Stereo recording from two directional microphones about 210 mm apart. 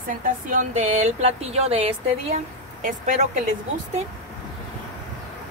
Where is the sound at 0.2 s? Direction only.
35° right (ahead or behind).